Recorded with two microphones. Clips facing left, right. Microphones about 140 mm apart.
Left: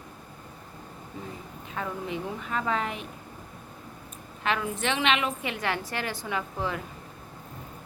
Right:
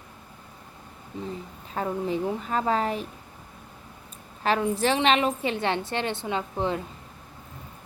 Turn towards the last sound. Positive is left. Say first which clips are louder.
# right 4 dB
turn(degrees=-25)  # may be behind; listen again after turning